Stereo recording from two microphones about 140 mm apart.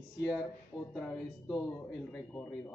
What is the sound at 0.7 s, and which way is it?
Speech, 30° left (ahead or behind).